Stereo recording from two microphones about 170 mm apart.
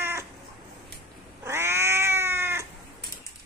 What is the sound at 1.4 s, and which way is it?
Cat, 15° right (ahead or behind).